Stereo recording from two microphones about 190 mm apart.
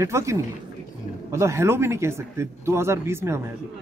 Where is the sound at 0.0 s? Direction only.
15° right (ahead or behind).